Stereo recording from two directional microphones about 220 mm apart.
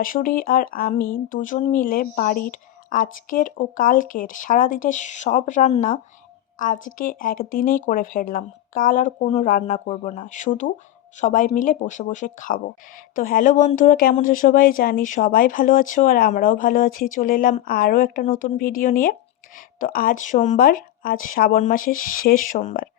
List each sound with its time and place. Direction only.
0.0 s speech: 40° left (ahead or behind)